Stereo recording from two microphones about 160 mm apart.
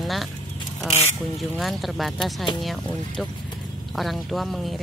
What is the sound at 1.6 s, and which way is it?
Speech, centre (ahead or behind).